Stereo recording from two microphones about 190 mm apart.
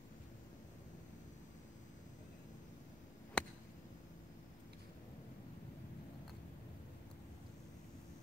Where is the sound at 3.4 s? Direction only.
5° left (ahead or behind).